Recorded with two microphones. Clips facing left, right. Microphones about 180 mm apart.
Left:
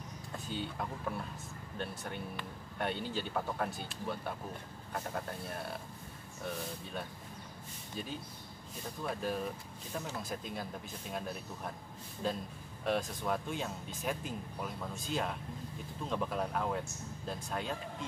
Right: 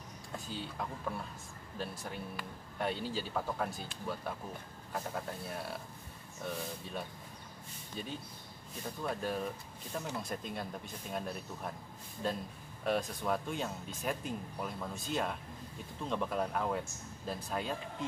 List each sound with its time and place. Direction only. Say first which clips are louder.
0.5 s speech: left 3 dB; centre (ahead or behind)
9.0 s speech: even; centre (ahead or behind)